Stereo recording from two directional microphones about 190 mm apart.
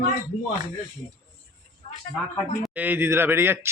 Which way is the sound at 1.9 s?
25° left (ahead or behind).